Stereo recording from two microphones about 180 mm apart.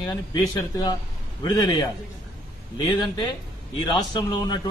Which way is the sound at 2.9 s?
25° left (ahead or behind).